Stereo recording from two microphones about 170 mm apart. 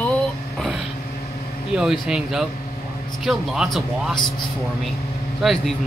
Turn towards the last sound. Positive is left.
turn(degrees=0)  # may be behind; listen again after turning